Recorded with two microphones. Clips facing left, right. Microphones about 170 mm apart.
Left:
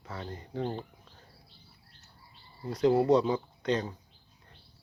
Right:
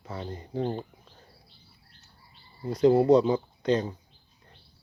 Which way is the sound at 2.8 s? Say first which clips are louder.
Right 4 dB; 25° right (ahead or behind).